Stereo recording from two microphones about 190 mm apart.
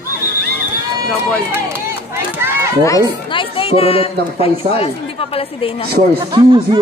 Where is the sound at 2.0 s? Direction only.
10° right (ahead or behind).